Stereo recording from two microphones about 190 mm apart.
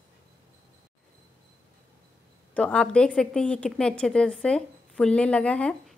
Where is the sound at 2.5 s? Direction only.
5° left (ahead or behind).